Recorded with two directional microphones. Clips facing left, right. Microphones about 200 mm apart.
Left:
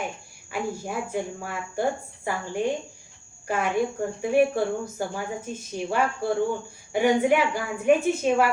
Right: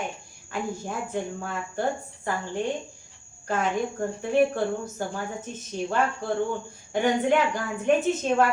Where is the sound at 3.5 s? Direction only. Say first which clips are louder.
Left 2 dB; 10° left (ahead or behind).